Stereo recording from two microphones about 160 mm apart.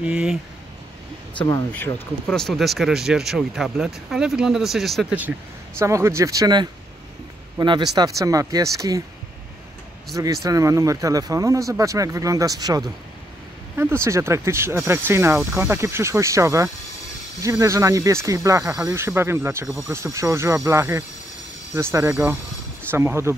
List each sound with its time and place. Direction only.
0.0 s speech: 5° right (ahead or behind)
1.7 s speech: 5° left (ahead or behind)
5.8 s speech: 15° right (ahead or behind)
10.1 s speech: 20° right (ahead or behind)